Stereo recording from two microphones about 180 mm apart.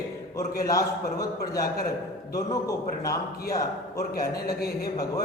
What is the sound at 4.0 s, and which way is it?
Speech, 60° left (ahead or behind).